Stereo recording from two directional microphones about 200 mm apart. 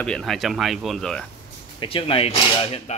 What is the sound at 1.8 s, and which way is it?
Speech, 25° left (ahead or behind).